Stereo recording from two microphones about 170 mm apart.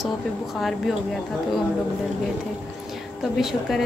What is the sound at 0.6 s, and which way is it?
Speech, centre (ahead or behind).